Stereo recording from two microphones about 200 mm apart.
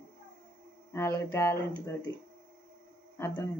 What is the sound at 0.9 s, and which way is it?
Speech, 15° left (ahead or behind).